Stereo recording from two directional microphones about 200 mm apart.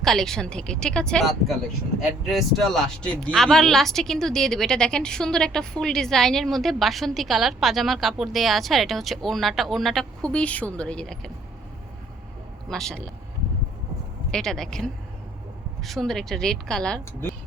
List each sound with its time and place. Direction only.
0.0 s speech: centre (ahead or behind)
12.6 s speech: centre (ahead or behind)
14.3 s speech: 5° left (ahead or behind)